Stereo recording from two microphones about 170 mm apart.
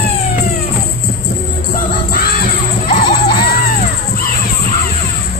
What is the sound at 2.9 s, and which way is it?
Music, 65° left (ahead or behind).